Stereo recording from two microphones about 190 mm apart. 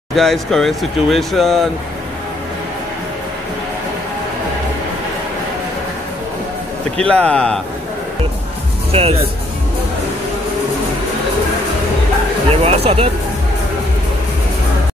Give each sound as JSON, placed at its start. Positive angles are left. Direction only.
{"t": 0.1, "sound": "speech", "side_deg": 0}
{"t": 7.0, "sound": "speech", "side_deg": 5}
{"t": 8.9, "sound": "speech", "side_deg": -30}
{"t": 12.4, "sound": "speech", "side_deg": -30}